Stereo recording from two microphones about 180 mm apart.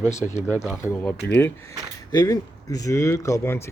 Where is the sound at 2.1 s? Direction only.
20° left (ahead or behind).